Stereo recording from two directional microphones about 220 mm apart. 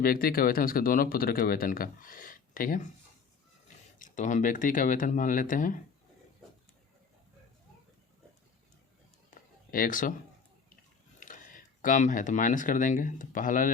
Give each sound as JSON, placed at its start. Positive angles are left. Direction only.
{"t": 0.0, "sound": "speech", "side_deg": 40}
{"t": 3.9, "sound": "speech", "side_deg": 35}
{"t": 9.7, "sound": "speech", "side_deg": 40}
{"t": 11.2, "sound": "speech", "side_deg": 35}